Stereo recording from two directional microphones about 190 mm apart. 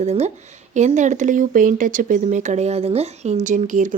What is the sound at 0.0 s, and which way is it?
Speech, 35° right (ahead or behind).